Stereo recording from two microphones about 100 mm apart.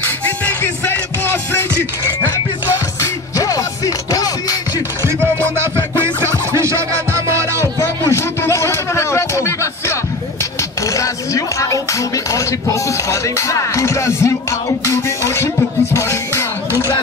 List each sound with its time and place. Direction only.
0.6 s music: 20° left (ahead or behind)
3.3 s music: 35° left (ahead or behind)
5.0 s music: 25° right (ahead or behind)
7.6 s a sound: 30° left (ahead or behind)
15.9 s music: 25° left (ahead or behind)